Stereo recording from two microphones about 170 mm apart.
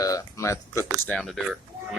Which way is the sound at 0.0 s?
20° left (ahead or behind).